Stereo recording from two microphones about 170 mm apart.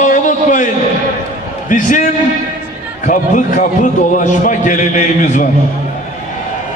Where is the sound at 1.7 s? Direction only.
50° left (ahead or behind).